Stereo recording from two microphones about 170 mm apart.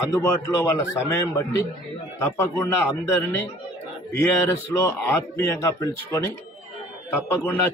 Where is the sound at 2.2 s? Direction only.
15° left (ahead or behind).